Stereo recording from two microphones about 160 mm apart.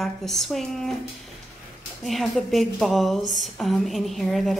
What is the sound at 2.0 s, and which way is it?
A woman's voice, centre (ahead or behind).